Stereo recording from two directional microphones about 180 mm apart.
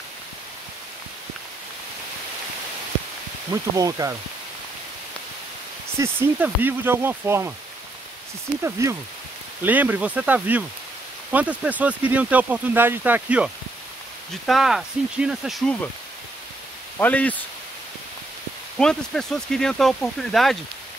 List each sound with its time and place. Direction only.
3.7 s speech: 20° right (ahead or behind)
5.9 s speech: 10° right (ahead or behind)
8.6 s speech: 15° right (ahead or behind); by 15.9 s 5° left (ahead or behind)
17.0 s speech: 10° left (ahead or behind)
18.8 s speech: 5° left (ahead or behind)